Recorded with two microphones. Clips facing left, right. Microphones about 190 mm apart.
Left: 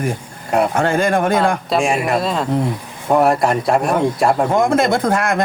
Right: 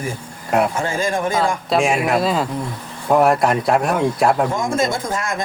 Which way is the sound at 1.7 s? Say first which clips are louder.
Right 3 dB; centre (ahead or behind).